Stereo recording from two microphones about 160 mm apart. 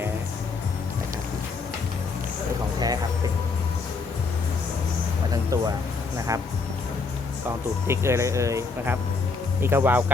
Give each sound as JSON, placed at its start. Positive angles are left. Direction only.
{"t": 5.3, "sound": "a sound", "side_deg": -20}
{"t": 6.1, "sound": "speech", "side_deg": -20}
{"t": 7.9, "sound": "speech", "side_deg": -15}